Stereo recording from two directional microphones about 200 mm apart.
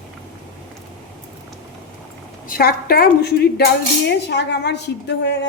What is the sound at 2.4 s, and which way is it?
A woman's voice, 50° left (ahead or behind).